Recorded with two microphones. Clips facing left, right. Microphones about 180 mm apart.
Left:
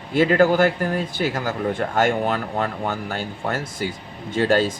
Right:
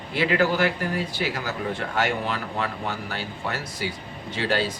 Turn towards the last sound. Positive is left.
turn(degrees=45)  # may be behind; listen again after turning